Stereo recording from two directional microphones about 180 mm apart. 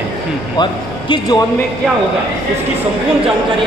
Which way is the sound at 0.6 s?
25° left (ahead or behind).